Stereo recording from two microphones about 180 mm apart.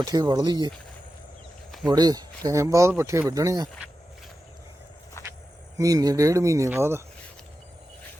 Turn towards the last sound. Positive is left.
turn(degrees=-15)  # may be behind; listen again after turning